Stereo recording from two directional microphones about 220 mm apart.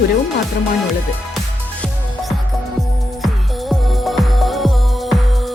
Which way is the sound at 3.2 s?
Centre (ahead or behind).